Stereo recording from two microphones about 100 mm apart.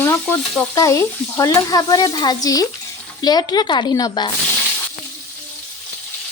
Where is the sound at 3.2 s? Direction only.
40° left (ahead or behind).